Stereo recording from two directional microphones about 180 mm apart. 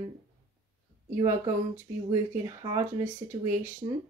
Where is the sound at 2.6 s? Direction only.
25° right (ahead or behind).